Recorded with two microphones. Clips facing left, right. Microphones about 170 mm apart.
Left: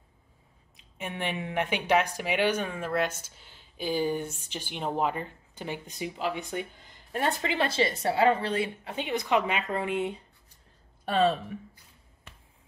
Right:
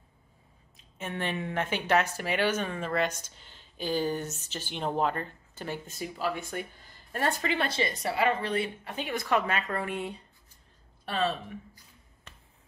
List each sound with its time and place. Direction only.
0.9 s a woman's voice: 15° left (ahead or behind)
11.1 s speech: 35° left (ahead or behind)